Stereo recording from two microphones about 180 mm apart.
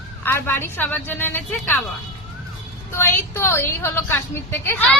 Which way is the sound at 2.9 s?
15° left (ahead or behind).